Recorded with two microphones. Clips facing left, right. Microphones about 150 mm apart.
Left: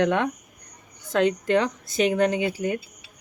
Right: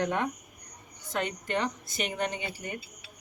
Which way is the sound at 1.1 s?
90° left.